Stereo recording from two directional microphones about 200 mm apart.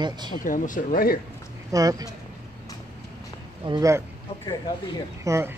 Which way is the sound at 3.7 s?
15° right (ahead or behind).